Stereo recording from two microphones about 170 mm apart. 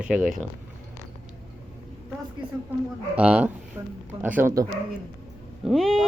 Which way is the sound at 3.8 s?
20° right (ahead or behind).